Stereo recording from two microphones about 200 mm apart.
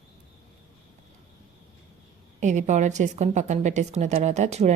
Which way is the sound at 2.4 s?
35° right (ahead or behind).